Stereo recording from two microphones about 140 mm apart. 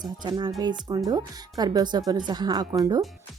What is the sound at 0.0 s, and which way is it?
A woman's voice, 30° right (ahead or behind).